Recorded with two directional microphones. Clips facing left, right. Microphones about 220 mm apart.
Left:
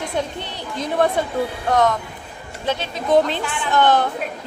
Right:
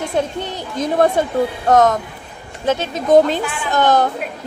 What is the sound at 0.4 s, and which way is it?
A woman's voice, 45° right (ahead or behind).